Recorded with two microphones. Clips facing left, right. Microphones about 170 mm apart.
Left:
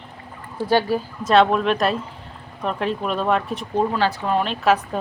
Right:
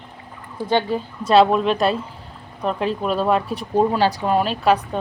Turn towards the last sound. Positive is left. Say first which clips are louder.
# right 1 dB
turn(degrees=0)  # may be behind; listen again after turning